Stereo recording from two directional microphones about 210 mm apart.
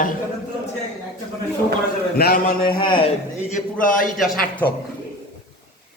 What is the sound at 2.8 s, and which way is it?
A man's voice, 25° left (ahead or behind).